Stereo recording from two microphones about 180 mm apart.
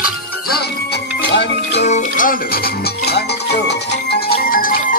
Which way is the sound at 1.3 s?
70° left (ahead or behind).